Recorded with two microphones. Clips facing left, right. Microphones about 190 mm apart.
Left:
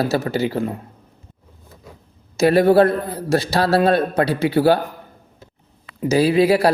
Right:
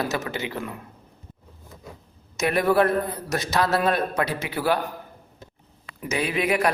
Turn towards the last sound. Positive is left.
turn(degrees=35)  # may be behind; listen again after turning